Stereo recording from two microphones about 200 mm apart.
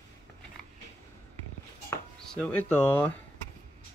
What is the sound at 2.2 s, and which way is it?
Speech, 5° left (ahead or behind).